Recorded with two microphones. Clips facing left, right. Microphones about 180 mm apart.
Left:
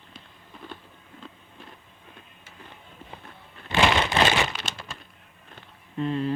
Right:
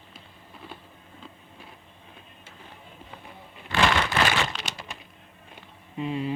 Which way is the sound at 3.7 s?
20° left (ahead or behind).